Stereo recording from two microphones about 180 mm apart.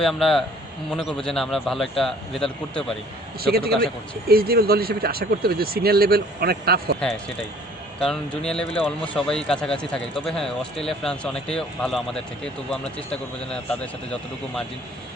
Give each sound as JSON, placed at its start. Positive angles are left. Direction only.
{"t": 0.0, "sound": "speech", "side_deg": 0}
{"t": 3.4, "sound": "speech", "side_deg": -60}
{"t": 3.8, "sound": "speech", "side_deg": 5}
{"t": 4.3, "sound": "speech", "side_deg": -60}
{"t": 8.0, "sound": "speech", "side_deg": 0}